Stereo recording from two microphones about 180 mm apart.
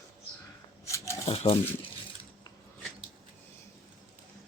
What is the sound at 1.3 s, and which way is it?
Speech, 30° left (ahead or behind).